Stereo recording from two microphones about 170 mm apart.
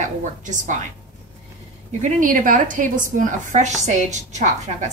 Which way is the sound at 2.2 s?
50° right (ahead or behind).